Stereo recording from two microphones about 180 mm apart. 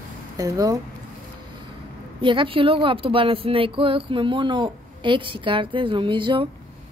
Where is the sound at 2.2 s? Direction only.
30° right (ahead or behind).